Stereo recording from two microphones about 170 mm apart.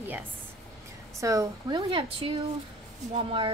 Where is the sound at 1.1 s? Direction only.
20° right (ahead or behind).